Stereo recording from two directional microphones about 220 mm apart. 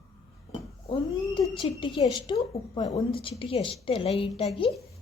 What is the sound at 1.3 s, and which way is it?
A woman's voice, 25° left (ahead or behind).